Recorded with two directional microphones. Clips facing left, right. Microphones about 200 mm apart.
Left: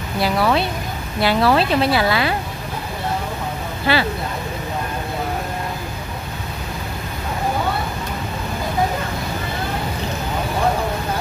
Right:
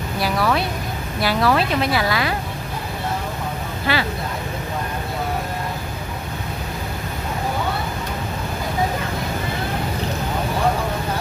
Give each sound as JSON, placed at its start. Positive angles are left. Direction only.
{"t": 0.2, "sound": "speech", "side_deg": 25}
{"t": 3.9, "sound": "speech", "side_deg": 30}